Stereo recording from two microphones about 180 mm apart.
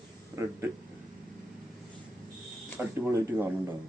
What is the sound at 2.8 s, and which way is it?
Speech, 10° right (ahead or behind).